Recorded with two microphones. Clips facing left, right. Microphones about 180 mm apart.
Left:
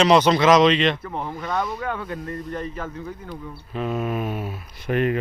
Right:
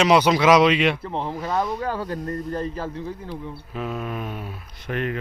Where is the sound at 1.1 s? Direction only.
30° right (ahead or behind).